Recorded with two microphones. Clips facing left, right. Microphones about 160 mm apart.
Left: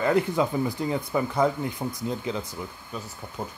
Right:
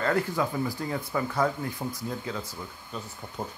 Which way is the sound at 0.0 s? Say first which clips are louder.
Left 4 dB; 20° left (ahead or behind).